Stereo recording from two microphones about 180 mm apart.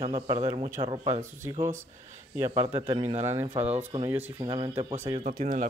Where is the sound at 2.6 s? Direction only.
35° right (ahead or behind).